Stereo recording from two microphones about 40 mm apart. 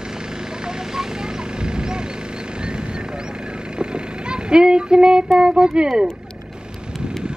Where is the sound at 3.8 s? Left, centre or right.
Right.